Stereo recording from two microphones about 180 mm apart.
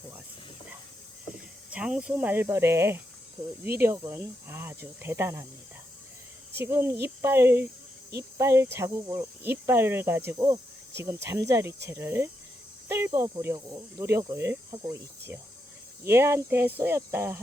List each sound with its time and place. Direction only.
1.7 s speech: 5° right (ahead or behind)
6.6 s speech: 15° right (ahead or behind)